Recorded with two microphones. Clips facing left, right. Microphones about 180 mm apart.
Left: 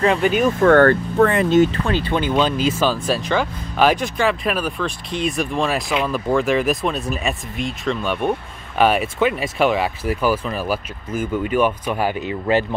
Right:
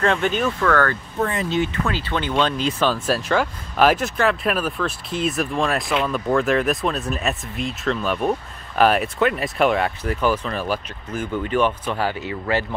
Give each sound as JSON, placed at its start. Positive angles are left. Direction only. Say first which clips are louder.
{"t": 0.0, "sound": "speech", "louder": "left 4 dB", "side_deg": 5}
{"t": 0.6, "sound": "speech", "louder": "left 8 dB", "side_deg": 30}
{"t": 1.1, "sound": "speech", "louder": "left 8 dB", "side_deg": 65}
{"t": 1.6, "sound": "speech", "louder": "left 6 dB", "side_deg": 35}
{"t": 2.0, "sound": "speech", "louder": "left 4 dB", "side_deg": 15}